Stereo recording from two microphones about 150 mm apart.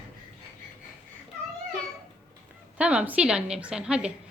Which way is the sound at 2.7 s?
10° right (ahead or behind).